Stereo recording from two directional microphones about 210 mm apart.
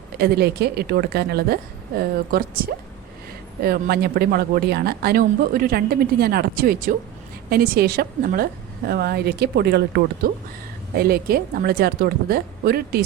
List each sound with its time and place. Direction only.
0.2 s speech: 50° right (ahead or behind)
3.6 s speech: 45° right (ahead or behind)